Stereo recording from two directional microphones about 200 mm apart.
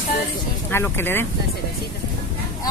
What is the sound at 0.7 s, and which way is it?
Speech, 10° left (ahead or behind).